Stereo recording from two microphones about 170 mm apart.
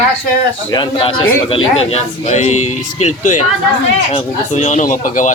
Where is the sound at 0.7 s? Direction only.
30° left (ahead or behind); by 3.4 s 45° left (ahead or behind).